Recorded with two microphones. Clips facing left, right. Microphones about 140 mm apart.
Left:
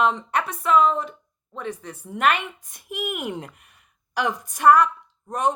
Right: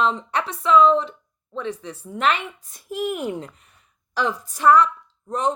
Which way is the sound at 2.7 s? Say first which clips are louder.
Right 2 dB; 15° left (ahead or behind).